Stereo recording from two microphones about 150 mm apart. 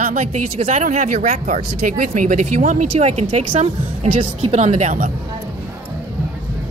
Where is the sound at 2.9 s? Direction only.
50° right (ahead or behind).